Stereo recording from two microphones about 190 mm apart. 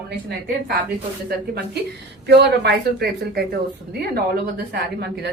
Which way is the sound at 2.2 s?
60° right (ahead or behind).